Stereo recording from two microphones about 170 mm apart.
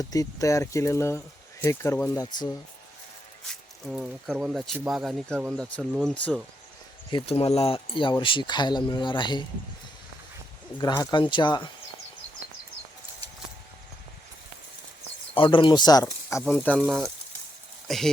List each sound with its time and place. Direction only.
0.0 s speech: 20° left (ahead or behind)
3.8 s speech: 5° right (ahead or behind)
7.1 s speech: 30° left (ahead or behind)
10.8 s speech: 20° left (ahead or behind)
15.4 s speech: 30° left (ahead or behind)
16.4 s speech: 5° left (ahead or behind)